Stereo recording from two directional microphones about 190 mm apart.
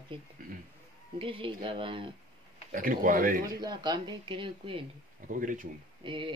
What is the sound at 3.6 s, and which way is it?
Speech, 20° right (ahead or behind).